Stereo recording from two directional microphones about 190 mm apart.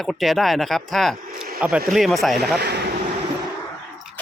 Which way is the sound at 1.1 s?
50° right (ahead or behind).